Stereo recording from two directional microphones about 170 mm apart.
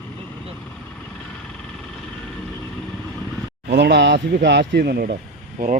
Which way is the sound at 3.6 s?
80° right.